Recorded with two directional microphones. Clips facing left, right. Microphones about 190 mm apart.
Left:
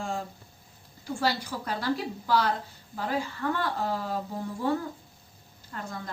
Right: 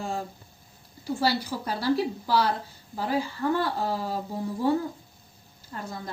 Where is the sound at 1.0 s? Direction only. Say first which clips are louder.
Right 3 dB; 10° right (ahead or behind).